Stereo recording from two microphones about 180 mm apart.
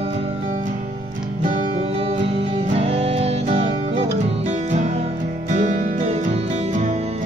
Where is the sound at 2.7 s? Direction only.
35° right (ahead or behind).